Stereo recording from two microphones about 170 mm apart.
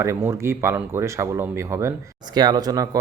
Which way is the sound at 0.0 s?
15° right (ahead or behind).